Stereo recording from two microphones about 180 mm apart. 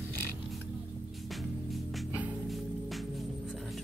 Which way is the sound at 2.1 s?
10° right (ahead or behind).